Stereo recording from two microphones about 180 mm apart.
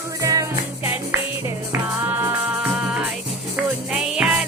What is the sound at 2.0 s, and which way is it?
Music, 10° right (ahead or behind).